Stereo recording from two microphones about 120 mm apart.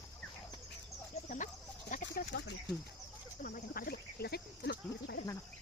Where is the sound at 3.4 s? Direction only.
90° left.